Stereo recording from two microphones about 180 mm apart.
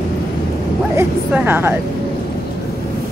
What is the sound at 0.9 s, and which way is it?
Dog, 10° right (ahead or behind).